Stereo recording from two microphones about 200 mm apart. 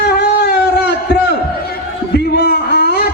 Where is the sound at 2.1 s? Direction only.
55° left (ahead or behind).